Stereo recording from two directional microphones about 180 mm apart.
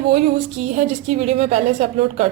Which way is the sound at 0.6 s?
40° right (ahead or behind).